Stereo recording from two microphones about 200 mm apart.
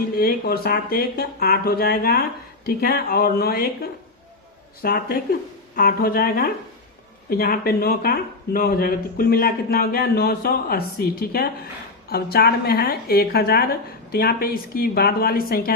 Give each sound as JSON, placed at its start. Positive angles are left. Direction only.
{"t": 0.2, "sound": "speech", "side_deg": 50}
{"t": 4.8, "sound": "speech", "side_deg": 50}